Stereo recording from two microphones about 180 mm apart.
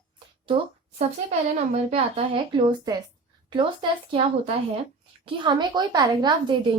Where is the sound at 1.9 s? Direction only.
30° right (ahead or behind).